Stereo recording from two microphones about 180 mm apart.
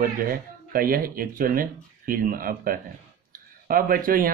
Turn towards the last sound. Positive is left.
turn(degrees=-50)  # may be behind; listen again after turning